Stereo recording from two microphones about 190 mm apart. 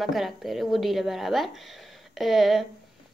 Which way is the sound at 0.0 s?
Centre (ahead or behind).